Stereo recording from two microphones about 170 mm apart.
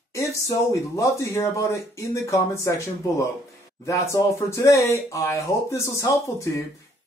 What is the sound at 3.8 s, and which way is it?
Speech, 15° left (ahead or behind).